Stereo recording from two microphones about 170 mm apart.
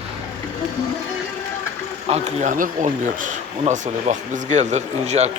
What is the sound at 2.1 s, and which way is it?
Speech, 45° right (ahead or behind).